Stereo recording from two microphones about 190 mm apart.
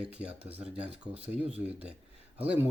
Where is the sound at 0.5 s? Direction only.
35° right (ahead or behind).